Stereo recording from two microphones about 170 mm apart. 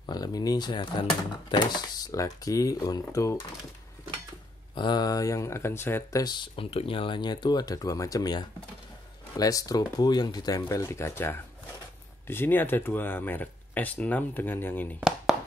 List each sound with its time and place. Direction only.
0.0 s speech: 25° left (ahead or behind)
4.7 s speech: 25° left (ahead or behind)
6.2 s speech: 25° left (ahead or behind); by 15.0 s 10° left (ahead or behind)
15.0 s chop: centre (ahead or behind)